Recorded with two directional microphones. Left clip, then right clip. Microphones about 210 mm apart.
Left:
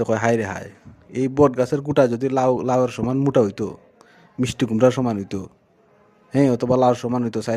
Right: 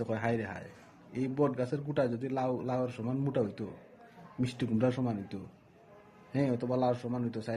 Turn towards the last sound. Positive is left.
turn(degrees=45)  # may be behind; listen again after turning